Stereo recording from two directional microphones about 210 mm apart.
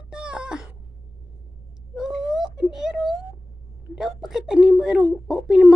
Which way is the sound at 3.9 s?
Centre (ahead or behind).